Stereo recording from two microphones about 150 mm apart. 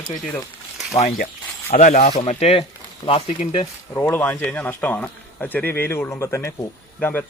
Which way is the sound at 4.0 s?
15° left (ahead or behind).